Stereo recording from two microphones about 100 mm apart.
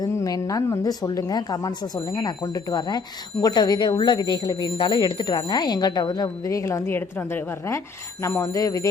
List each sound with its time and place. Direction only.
0.1 s a woman's voice: 30° left (ahead or behind)
8.4 s speech: 35° left (ahead or behind)